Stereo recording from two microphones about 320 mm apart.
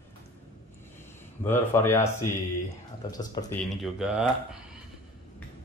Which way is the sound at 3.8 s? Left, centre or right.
Centre.